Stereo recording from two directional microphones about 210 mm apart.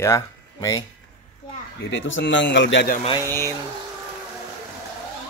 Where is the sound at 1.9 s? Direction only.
60° left (ahead or behind).